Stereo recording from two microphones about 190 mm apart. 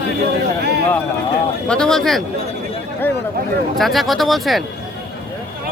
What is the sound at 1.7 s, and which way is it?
Speech, 5° left (ahead or behind).